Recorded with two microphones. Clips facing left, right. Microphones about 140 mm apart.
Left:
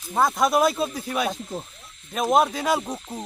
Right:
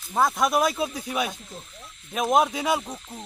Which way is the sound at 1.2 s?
65° left (ahead or behind).